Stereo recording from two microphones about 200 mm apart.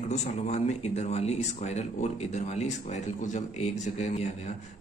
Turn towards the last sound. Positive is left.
turn(degrees=35)  # may be behind; listen again after turning